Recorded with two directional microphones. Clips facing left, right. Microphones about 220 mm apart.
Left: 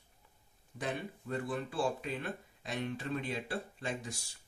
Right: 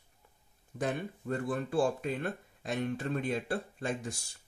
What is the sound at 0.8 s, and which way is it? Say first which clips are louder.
Speech: right 4 dB; 50° right (ahead or behind).